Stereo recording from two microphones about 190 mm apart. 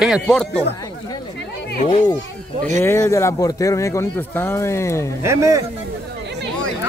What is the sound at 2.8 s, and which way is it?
Speech, 15° left (ahead or behind).